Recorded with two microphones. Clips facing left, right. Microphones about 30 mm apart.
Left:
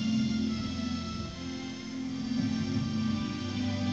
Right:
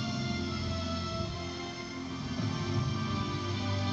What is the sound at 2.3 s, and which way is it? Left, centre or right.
Music, right.